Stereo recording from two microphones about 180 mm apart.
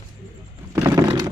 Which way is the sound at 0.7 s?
20° right (ahead or behind).